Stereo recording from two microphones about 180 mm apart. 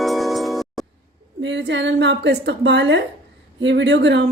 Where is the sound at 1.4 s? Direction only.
80° right.